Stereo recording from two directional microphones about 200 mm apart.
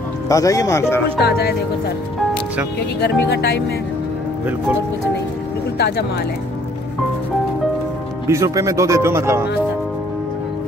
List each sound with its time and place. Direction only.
0.3 s speech: 15° left (ahead or behind)
3.0 s speech: 55° left (ahead or behind)
5.8 s speech: 55° left (ahead or behind)
8.3 s speech: 15° right (ahead or behind)